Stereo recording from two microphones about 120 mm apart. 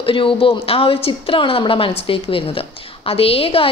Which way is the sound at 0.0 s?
45° left (ahead or behind).